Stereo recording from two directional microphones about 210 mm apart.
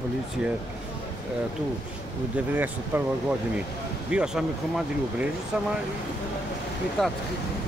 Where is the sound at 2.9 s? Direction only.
10° right (ahead or behind).